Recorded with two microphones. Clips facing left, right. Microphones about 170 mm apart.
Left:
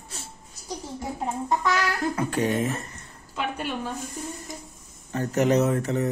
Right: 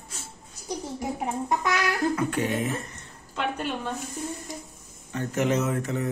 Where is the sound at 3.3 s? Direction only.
5° left (ahead or behind).